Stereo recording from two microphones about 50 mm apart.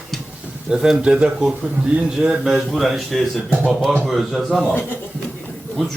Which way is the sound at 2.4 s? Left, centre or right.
Centre.